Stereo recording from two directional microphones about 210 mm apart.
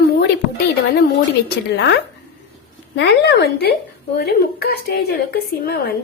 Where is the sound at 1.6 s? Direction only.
55° left (ahead or behind).